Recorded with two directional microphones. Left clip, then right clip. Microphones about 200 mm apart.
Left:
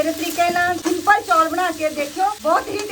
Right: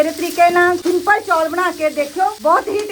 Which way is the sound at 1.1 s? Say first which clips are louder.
Left 1 dB; 30° right (ahead or behind).